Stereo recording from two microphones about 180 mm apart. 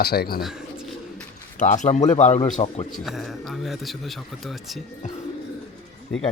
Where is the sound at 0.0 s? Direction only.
60° left (ahead or behind).